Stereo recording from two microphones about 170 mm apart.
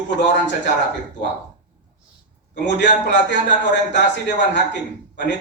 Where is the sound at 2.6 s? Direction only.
90° left.